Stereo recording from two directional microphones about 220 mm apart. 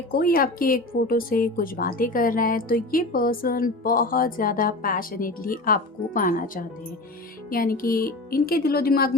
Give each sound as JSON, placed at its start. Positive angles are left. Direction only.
{"t": 0.1, "sound": "a woman's voice", "side_deg": 40}